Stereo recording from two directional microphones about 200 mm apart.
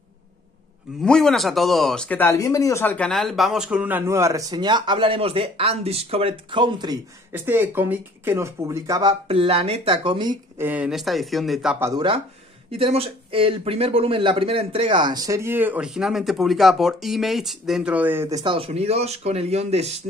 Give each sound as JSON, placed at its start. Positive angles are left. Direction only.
{"t": 1.0, "sound": "speech", "side_deg": 0}
{"t": 7.3, "sound": "speech", "side_deg": -10}
{"t": 9.3, "sound": "speech", "side_deg": -30}
{"t": 10.6, "sound": "speech", "side_deg": -5}
{"t": 11.9, "sound": "speech", "side_deg": -25}
{"t": 18.4, "sound": "speech", "side_deg": -25}